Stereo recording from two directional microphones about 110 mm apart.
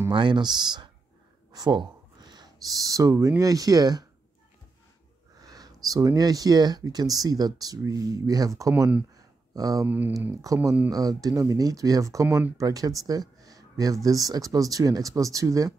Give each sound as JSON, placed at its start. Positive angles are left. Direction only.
{"t": 0.1, "sound": "speech", "side_deg": -45}
{"t": 5.4, "sound": "speech", "side_deg": -35}
{"t": 9.1, "sound": "a sound", "side_deg": -35}
{"t": 9.8, "sound": "speech", "side_deg": -15}
{"t": 10.4, "sound": "speech", "side_deg": -30}
{"t": 13.4, "sound": "a sound", "side_deg": -35}
{"t": 14.0, "sound": "speech", "side_deg": -35}